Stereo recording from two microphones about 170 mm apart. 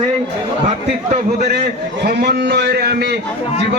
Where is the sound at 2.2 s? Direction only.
70° right (ahead or behind).